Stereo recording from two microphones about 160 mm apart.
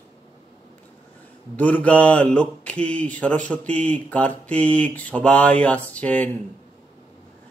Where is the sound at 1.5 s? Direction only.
10° left (ahead or behind).